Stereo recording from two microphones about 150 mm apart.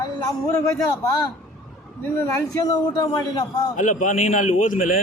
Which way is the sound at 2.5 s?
25° left (ahead or behind).